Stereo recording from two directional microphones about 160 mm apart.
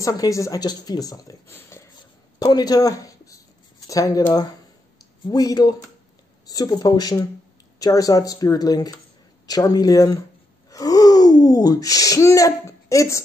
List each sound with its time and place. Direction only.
0.0 s speech: 20° left (ahead or behind)